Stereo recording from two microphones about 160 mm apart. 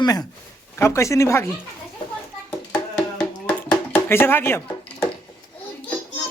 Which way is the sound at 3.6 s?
15° left (ahead or behind).